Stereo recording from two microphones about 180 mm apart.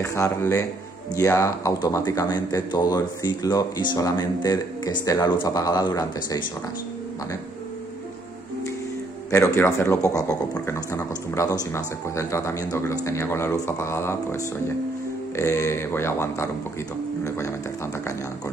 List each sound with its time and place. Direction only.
0.0 s speech: 15° left (ahead or behind)
9.3 s speech: 15° left (ahead or behind)